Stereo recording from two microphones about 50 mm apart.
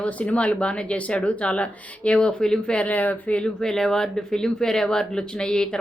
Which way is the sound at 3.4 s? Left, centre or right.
Centre.